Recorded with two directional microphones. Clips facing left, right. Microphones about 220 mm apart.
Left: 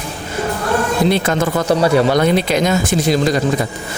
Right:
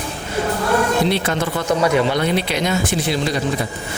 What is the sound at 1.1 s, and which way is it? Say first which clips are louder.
A man's voice: left 4 dB; 45° left (ahead or behind).